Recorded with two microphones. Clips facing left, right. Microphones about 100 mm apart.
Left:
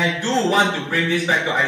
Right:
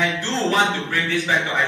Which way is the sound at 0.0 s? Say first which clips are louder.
Left 3 dB; 15° left (ahead or behind).